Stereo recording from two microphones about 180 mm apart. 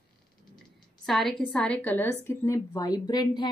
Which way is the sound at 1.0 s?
Centre (ahead or behind).